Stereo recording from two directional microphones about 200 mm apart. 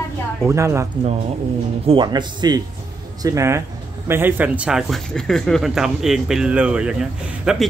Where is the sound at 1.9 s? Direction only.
25° right (ahead or behind).